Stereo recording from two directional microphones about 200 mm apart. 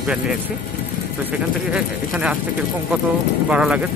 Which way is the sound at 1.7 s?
5° right (ahead or behind).